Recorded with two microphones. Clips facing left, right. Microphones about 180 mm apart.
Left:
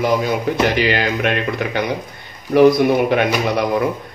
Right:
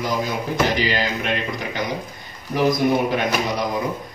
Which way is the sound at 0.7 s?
65° left (ahead or behind).